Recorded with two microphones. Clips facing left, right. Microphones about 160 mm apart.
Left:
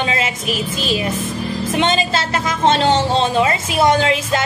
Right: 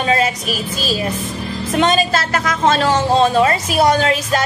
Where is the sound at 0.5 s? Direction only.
25° left (ahead or behind).